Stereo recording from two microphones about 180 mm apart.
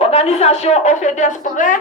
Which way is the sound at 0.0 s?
35° left (ahead or behind).